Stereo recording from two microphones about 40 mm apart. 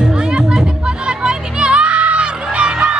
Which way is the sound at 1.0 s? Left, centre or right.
Right.